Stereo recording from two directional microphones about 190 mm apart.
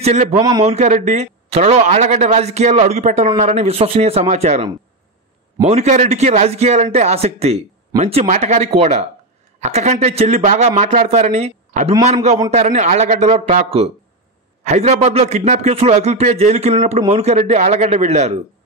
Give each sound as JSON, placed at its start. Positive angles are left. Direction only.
{"t": 0.0, "sound": "speech", "side_deg": -35}
{"t": 0.4, "sound": "a man's voice", "side_deg": -20}
{"t": 0.7, "sound": "speech", "side_deg": -40}